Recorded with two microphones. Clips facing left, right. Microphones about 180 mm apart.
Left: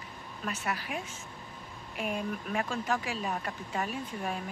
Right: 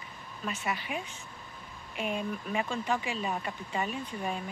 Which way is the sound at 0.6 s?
Centre (ahead or behind).